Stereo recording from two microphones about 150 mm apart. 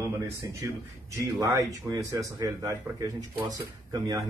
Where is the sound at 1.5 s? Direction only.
20° right (ahead or behind).